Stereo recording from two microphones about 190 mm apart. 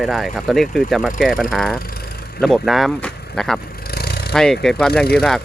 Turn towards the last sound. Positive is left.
turn(degrees=0)  # may be behind; listen again after turning